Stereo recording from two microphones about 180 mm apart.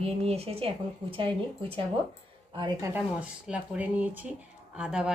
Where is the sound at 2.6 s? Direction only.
25° right (ahead or behind).